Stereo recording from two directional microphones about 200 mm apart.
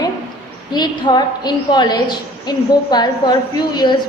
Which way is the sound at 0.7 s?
20° left (ahead or behind).